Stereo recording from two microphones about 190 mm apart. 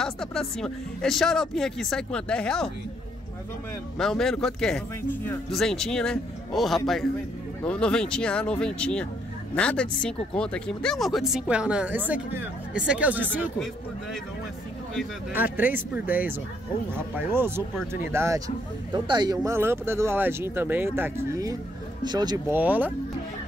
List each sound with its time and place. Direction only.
0.0 s speech: 5° left (ahead or behind)
4.0 s speech: centre (ahead or behind)
15.0 s speech: 10° right (ahead or behind)
22.6 s speech: 10° right (ahead or behind)